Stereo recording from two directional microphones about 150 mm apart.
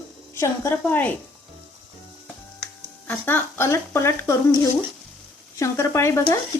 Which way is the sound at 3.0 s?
15° left (ahead or behind).